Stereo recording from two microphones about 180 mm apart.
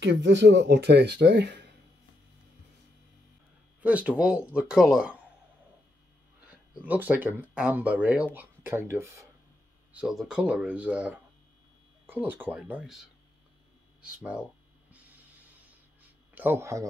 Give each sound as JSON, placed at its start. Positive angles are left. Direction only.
{"t": 0.0, "sound": "speech", "side_deg": -80}
{"t": 3.8, "sound": "speech", "side_deg": -5}
{"t": 6.4, "sound": "speech", "side_deg": -10}
{"t": 9.9, "sound": "speech", "side_deg": -5}
{"t": 16.3, "sound": "speech", "side_deg": -15}